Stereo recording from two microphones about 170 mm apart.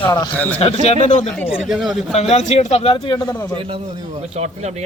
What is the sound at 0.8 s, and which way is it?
Speech, 40° left (ahead or behind).